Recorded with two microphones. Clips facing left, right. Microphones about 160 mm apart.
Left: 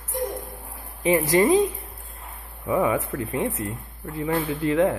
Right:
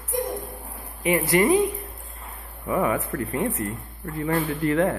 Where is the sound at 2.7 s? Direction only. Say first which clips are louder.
Left 1 dB; 15° left (ahead or behind).